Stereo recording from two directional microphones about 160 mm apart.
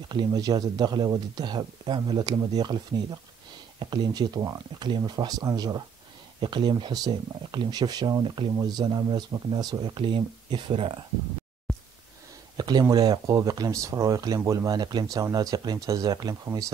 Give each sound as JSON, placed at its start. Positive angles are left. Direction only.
{"t": 0.1, "sound": "speech", "side_deg": -25}
{"t": 12.5, "sound": "a sound", "side_deg": -25}
{"t": 12.8, "sound": "speech", "side_deg": -25}